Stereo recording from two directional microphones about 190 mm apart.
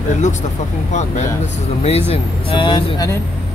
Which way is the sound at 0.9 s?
35° left (ahead or behind).